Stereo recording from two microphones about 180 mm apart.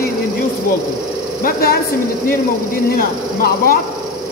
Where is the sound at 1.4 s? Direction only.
60° left (ahead or behind).